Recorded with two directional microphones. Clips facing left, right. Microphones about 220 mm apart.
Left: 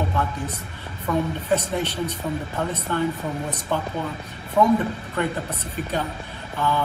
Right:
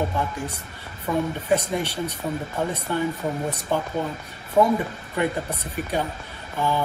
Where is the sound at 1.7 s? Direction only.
15° right (ahead or behind).